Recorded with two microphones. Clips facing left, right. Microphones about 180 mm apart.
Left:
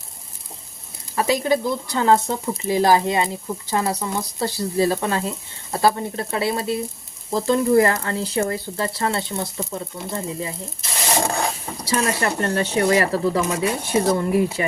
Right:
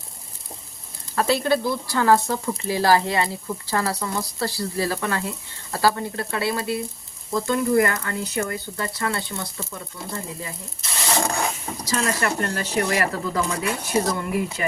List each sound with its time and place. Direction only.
1.1 s speech: 10° left (ahead or behind); by 14.6 s 30° left (ahead or behind)